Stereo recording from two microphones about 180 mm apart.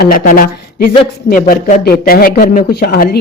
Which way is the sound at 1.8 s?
55° left (ahead or behind).